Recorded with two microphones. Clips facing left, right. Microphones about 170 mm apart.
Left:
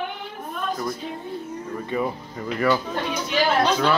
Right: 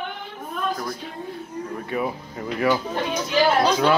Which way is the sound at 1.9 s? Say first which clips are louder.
Left 1 dB; 5° right (ahead or behind).